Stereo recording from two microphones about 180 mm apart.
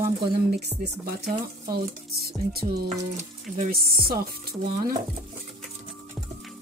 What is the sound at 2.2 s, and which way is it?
Speech, 60° right (ahead or behind).